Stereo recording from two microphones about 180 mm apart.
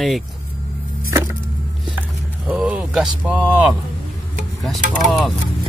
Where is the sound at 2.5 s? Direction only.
10° right (ahead or behind).